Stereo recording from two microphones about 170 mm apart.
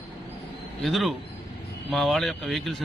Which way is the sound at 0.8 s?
Centre (ahead or behind).